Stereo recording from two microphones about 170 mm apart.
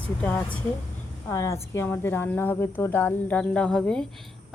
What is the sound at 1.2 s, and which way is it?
Speech, 15° left (ahead or behind).